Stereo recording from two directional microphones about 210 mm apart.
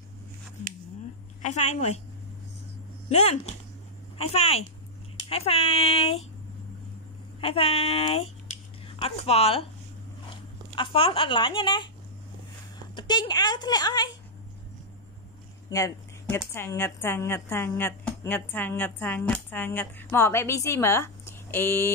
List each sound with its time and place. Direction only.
1.4 s a woman's voice: 35° left (ahead or behind)
3.1 s speech: 30° left (ahead or behind)
7.3 s speech: 25° left (ahead or behind)
10.7 s speech: 25° left (ahead or behind)
12.9 s speech: 20° left (ahead or behind)
15.7 s a woman's voice: 15° left (ahead or behind)